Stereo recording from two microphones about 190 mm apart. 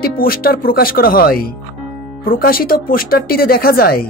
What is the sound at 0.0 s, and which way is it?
A woman's voice, 50° left (ahead or behind).